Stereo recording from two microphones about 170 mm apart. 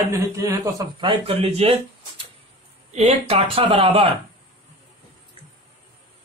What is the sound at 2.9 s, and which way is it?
Speech, 35° right (ahead or behind).